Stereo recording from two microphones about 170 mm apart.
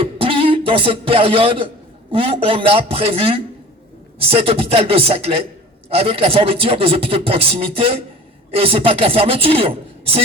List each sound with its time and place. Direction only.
0.0 s a man's voice: 30° right (ahead or behind)